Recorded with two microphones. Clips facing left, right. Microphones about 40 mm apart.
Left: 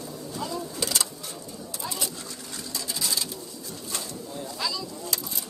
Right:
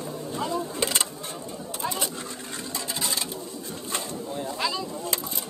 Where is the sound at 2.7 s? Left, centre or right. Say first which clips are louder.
Even; right.